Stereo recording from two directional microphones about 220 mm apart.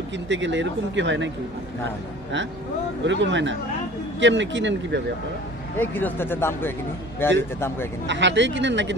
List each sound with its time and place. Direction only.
0.3 s speech: 55° right (ahead or behind)
3.1 s speech: 55° right (ahead or behind)
5.8 s speech: 10° left (ahead or behind)
8.1 s speech: 55° right (ahead or behind)